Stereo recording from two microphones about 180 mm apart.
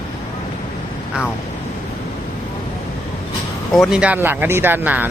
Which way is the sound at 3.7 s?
Centre (ahead or behind).